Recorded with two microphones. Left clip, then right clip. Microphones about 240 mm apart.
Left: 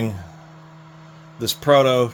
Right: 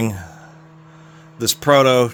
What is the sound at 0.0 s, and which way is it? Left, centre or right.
Speech, right.